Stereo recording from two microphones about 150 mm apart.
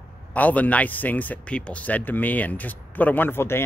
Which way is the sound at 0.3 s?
10° left (ahead or behind).